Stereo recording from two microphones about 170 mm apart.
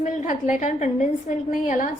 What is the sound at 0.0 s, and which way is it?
A woman's voice, 45° left (ahead or behind).